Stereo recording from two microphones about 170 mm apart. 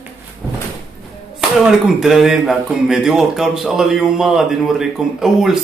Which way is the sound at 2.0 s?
Centre (ahead or behind).